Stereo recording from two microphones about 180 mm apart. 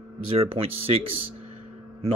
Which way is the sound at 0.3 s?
35° right (ahead or behind).